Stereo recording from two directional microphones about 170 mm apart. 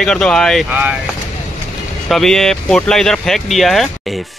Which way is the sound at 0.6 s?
10° right (ahead or behind).